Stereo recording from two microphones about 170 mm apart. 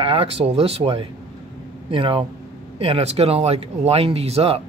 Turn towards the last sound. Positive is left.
turn(degrees=-35)  # may be behind; listen again after turning